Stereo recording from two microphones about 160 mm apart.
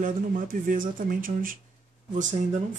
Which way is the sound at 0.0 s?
55° right (ahead or behind).